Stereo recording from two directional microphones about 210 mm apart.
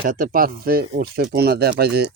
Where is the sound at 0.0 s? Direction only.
40° right (ahead or behind).